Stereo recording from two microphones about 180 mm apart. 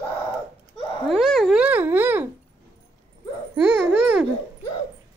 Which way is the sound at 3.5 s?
5° right (ahead or behind).